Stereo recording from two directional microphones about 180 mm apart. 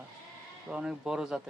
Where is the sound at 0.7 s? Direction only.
5° right (ahead or behind).